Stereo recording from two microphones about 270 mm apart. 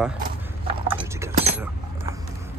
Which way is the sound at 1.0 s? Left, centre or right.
Centre.